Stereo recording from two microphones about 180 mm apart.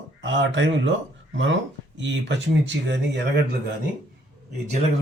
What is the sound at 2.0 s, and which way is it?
Speech, 85° right.